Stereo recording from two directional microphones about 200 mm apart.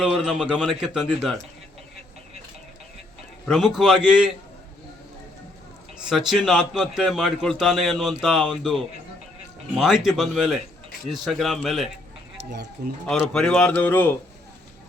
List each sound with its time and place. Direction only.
0.0 s a man's voice: centre (ahead or behind)
3.4 s a man's voice: centre (ahead or behind)
6.1 s a man's voice: centre (ahead or behind)
12.4 s speech: 60° right (ahead or behind)
13.3 s a man's voice: 5° left (ahead or behind)